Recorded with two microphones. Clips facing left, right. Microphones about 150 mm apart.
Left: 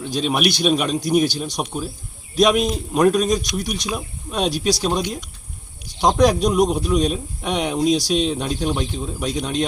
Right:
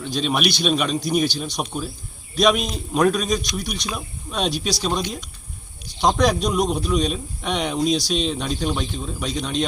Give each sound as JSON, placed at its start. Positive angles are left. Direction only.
{"t": 0.2, "sound": "speech", "side_deg": 5}